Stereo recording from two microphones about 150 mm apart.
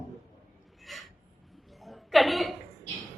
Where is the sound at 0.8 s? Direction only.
Centre (ahead or behind).